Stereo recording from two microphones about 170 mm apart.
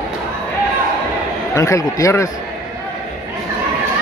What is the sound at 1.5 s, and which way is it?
Speech, 20° left (ahead or behind).